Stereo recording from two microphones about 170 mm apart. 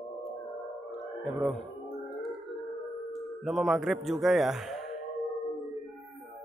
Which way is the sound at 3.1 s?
Centre (ahead or behind).